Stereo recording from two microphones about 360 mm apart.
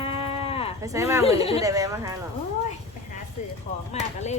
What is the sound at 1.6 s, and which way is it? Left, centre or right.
Speech, centre.